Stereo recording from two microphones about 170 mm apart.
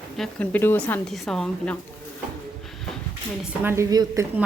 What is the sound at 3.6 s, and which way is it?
Speech, 15° right (ahead or behind).